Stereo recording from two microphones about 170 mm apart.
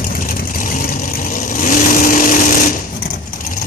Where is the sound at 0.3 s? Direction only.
55° left (ahead or behind).